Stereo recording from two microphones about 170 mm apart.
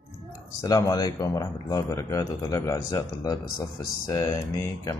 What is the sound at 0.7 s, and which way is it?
A man's voice, 20° left (ahead or behind).